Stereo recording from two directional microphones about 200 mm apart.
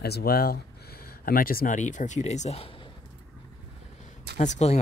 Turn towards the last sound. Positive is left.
turn(degrees=35)  # may be behind; listen again after turning